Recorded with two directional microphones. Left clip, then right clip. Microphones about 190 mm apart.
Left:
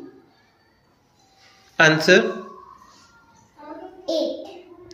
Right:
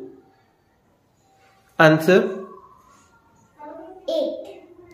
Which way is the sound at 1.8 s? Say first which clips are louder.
Even; 35° right (ahead or behind).